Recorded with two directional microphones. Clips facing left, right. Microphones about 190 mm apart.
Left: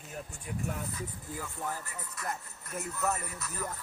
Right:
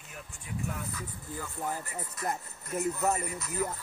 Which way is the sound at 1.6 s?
20° right (ahead or behind).